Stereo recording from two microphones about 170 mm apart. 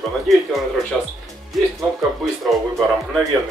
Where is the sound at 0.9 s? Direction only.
5° right (ahead or behind).